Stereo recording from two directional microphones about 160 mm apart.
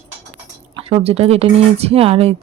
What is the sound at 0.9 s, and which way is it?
Speech, 40° right (ahead or behind).